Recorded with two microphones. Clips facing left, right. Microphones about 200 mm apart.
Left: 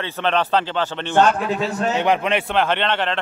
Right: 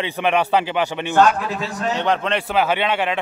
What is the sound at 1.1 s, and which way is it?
Speech, 30° left (ahead or behind).